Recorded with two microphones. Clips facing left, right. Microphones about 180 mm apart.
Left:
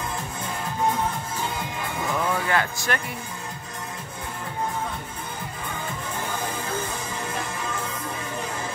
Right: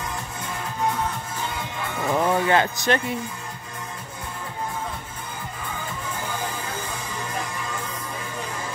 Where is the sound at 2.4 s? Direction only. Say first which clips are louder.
Right 5 dB; 25° right (ahead or behind).